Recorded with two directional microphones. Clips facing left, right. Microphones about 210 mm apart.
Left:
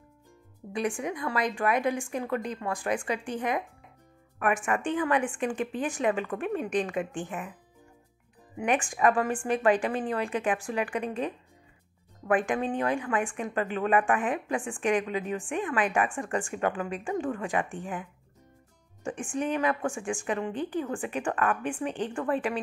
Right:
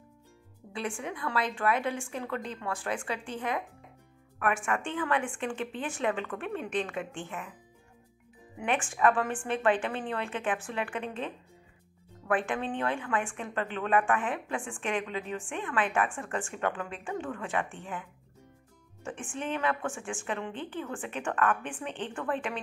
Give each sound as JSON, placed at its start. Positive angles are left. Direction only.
{"t": 0.7, "sound": "a woman's voice", "side_deg": 15}
{"t": 8.6, "sound": "a woman's voice", "side_deg": 15}
{"t": 19.3, "sound": "a woman's voice", "side_deg": 15}